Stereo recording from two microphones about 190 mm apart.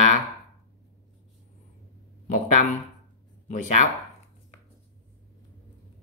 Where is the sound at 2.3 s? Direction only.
40° left (ahead or behind).